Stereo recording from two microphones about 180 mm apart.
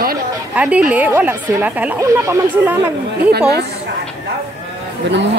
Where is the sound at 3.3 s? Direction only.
65° right (ahead or behind).